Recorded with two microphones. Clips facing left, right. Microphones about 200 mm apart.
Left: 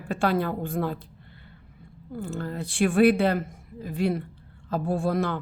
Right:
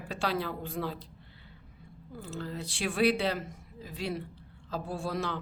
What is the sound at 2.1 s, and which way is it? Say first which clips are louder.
A woman's voice: left 6 dB; 55° left (ahead or behind).